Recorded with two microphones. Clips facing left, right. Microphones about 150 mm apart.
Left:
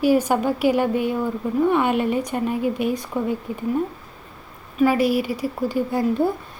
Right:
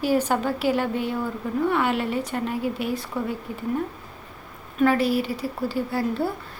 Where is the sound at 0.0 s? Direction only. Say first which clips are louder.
Left 4 dB; 15° left (ahead or behind).